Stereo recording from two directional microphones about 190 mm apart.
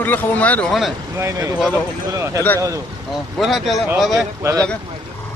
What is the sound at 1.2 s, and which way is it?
Speech, 15° right (ahead or behind).